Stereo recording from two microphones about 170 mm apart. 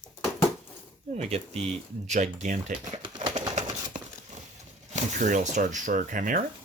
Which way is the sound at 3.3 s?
45° right (ahead or behind).